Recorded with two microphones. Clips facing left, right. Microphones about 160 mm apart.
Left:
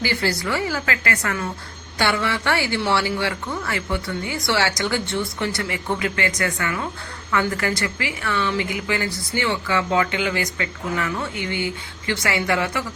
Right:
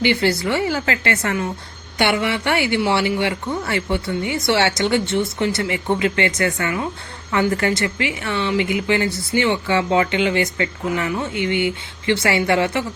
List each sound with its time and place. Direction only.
0.0 s a woman's voice: 20° right (ahead or behind)